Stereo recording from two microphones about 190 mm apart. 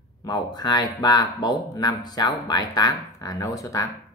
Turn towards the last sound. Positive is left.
turn(degrees=20)  # may be behind; listen again after turning